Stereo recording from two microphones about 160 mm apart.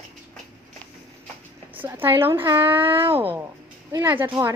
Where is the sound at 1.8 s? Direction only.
15° right (ahead or behind).